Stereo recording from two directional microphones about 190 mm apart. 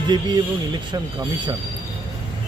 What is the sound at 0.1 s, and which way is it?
Speech, 25° right (ahead or behind).